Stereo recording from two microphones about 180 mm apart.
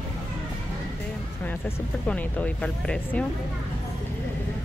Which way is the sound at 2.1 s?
5° left (ahead or behind).